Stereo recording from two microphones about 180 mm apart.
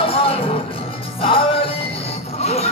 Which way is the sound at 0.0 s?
30° left (ahead or behind).